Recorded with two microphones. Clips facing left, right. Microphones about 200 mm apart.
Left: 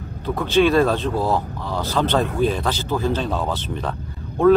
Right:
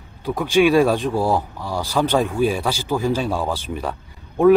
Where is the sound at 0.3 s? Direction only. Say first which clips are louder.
Right 1 dB; 10° right (ahead or behind).